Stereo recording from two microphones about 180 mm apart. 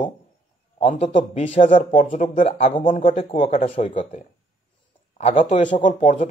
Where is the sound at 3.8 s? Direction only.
45° left (ahead or behind).